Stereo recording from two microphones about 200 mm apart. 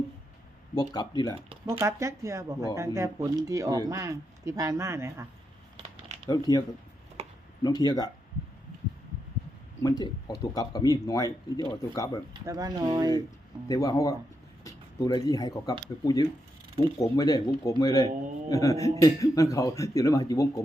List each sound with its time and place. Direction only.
0.8 s speech: 20° left (ahead or behind)
1.8 s speech: 15° right (ahead or behind)
6.1 s a sound: 35° right (ahead or behind)
6.5 s speech: 20° left (ahead or behind)
7.2 s a sound: 30° right (ahead or behind)
7.6 s speech: 20° left (ahead or behind)
9.8 s speech: 20° left (ahead or behind)
12.3 s speech: 20° right (ahead or behind)
13.7 s a man's voice: 15° left (ahead or behind)
17.0 s a man's voice: 20° left (ahead or behind)